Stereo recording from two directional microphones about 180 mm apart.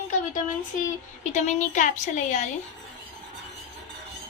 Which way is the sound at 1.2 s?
40° left (ahead or behind).